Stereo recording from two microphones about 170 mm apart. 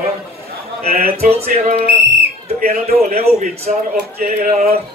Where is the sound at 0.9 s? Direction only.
60° right (ahead or behind).